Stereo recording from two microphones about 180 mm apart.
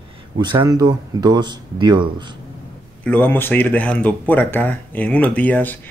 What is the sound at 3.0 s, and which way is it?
Speech, 10° left (ahead or behind).